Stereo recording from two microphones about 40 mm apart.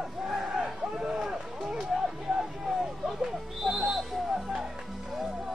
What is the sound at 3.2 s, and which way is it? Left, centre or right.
Music, centre.